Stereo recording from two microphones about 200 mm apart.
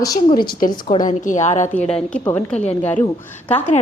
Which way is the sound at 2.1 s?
5° left (ahead or behind).